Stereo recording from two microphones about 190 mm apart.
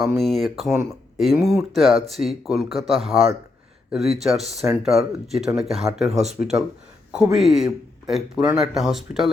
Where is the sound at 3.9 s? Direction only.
Centre (ahead or behind).